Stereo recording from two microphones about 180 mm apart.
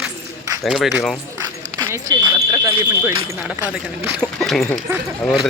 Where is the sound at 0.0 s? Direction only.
20° right (ahead or behind).